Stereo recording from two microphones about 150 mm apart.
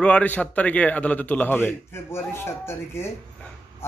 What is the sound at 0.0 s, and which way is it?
A man's voice, 10° left (ahead or behind).